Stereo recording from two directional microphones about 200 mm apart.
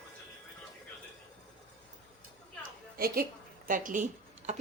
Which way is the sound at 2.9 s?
50° right (ahead or behind).